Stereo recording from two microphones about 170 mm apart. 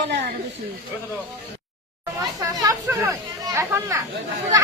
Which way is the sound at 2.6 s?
15° right (ahead or behind).